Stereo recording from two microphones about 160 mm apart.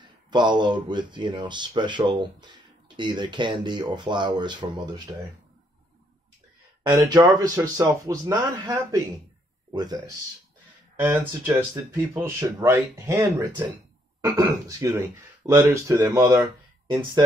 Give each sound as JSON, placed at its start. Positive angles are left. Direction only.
{"t": 0.0, "sound": "speech", "side_deg": -30}
{"t": 6.9, "sound": "speech", "side_deg": -25}
{"t": 11.0, "sound": "speech", "side_deg": -10}